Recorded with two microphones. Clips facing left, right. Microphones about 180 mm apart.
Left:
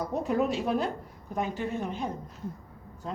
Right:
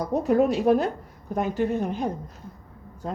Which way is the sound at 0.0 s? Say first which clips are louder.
Right 6 dB; 40° right (ahead or behind).